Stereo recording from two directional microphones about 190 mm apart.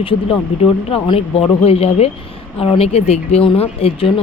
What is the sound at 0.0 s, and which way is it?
Speech, 30° left (ahead or behind).